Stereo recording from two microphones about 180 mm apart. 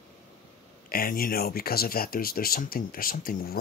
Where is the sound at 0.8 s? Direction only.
55° left (ahead or behind).